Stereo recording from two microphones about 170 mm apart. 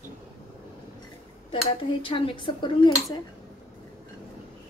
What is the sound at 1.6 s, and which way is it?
A woman's voice, 30° left (ahead or behind).